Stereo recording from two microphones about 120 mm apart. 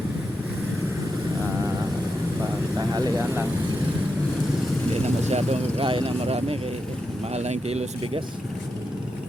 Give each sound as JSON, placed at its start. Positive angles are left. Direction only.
{"t": 2.7, "sound": "speech", "side_deg": -30}
{"t": 5.3, "sound": "speech", "side_deg": -55}